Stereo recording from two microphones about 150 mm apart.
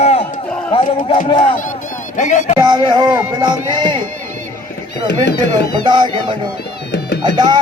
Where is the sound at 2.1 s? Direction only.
55° left (ahead or behind).